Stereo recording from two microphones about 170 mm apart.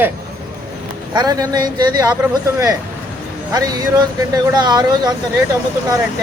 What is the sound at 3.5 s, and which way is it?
Speech, 20° right (ahead or behind).